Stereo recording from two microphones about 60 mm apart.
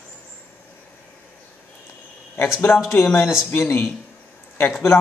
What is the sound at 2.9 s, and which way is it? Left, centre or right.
Speech, left.